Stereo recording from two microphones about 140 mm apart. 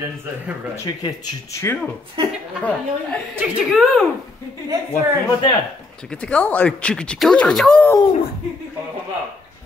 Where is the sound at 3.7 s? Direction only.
Centre (ahead or behind).